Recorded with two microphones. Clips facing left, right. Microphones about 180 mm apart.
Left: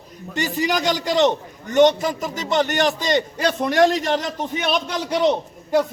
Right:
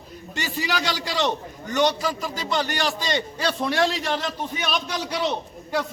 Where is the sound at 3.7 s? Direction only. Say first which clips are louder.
Left 8 dB; 45° left (ahead or behind).